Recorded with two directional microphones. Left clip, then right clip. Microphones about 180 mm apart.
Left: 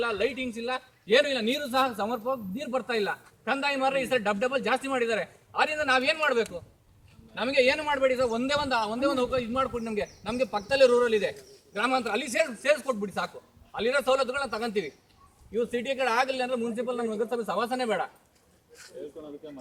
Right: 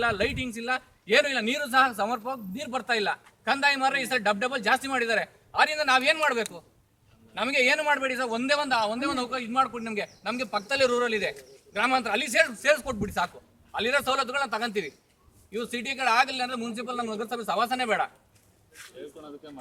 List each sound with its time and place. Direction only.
0.0 s a man's voice: 10° right (ahead or behind)
16.8 s speech: 20° right (ahead or behind)
17.1 s a man's voice: 10° right (ahead or behind)
18.8 s a sound: centre (ahead or behind)
19.1 s speech: 20° right (ahead or behind)